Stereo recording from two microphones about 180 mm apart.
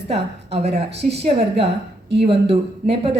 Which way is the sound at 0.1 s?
35° right (ahead or behind).